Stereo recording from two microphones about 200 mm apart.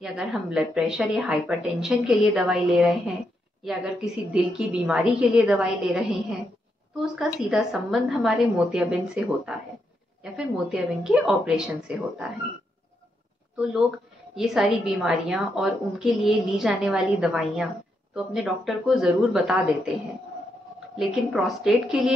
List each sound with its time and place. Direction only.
0.0 s a woman's voice: 5° right (ahead or behind)
13.6 s a woman's voice: 5° right (ahead or behind)
20.9 s a woman's voice: centre (ahead or behind)